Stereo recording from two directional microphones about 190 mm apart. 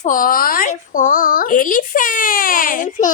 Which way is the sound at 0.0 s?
45° left (ahead or behind).